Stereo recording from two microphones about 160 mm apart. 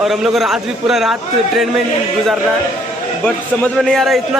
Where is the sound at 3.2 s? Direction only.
5° left (ahead or behind).